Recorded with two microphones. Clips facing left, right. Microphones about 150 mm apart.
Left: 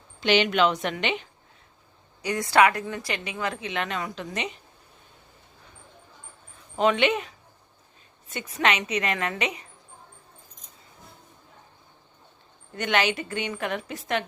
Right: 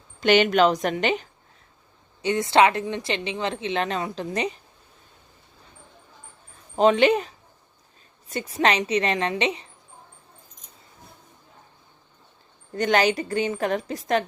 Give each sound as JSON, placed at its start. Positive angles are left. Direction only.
{"t": 0.2, "sound": "a woman's voice", "side_deg": -50}
{"t": 2.2, "sound": "a woman's voice", "side_deg": -25}
{"t": 6.7, "sound": "a woman's voice", "side_deg": -35}
{"t": 12.7, "sound": "a woman's voice", "side_deg": -35}